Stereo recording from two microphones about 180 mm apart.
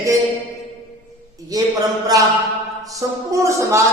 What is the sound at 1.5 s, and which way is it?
Speech, 20° right (ahead or behind).